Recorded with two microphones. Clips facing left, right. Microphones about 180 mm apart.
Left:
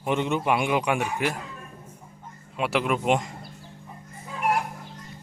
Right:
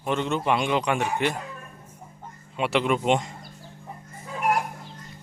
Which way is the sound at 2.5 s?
Centre (ahead or behind).